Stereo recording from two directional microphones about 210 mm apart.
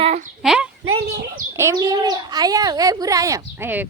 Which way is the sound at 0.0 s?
30° right (ahead or behind).